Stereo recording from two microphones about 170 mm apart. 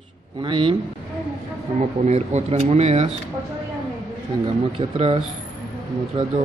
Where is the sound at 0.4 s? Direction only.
30° right (ahead or behind).